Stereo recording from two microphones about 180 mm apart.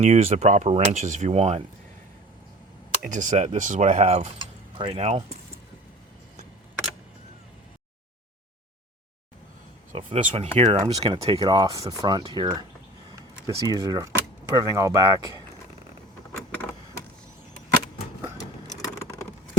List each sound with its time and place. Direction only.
0.0 s speech: 40° right (ahead or behind)
3.0 s speech: 45° right (ahead or behind)
9.9 s speech: 35° right (ahead or behind)
13.6 s speech: 20° left (ahead or behind)
13.8 s speech: 20° right (ahead or behind)